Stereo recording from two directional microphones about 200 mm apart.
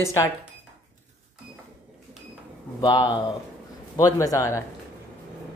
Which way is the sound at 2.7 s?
20° left (ahead or behind).